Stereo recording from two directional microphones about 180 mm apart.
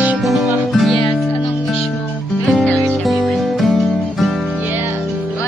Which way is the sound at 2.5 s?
5° left (ahead or behind).